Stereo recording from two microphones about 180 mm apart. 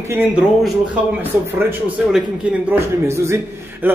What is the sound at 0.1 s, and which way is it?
A man's voice, 10° right (ahead or behind).